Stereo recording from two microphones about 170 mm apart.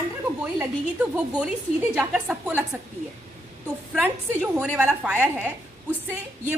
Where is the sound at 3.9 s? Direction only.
10° right (ahead or behind).